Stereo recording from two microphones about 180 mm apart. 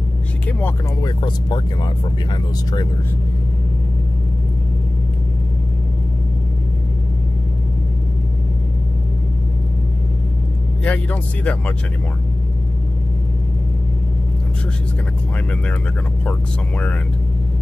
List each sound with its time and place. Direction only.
0.5 s speech: 10° left (ahead or behind)
1.0 s speech: 25° left (ahead or behind)
10.8 s speech: 10° left (ahead or behind)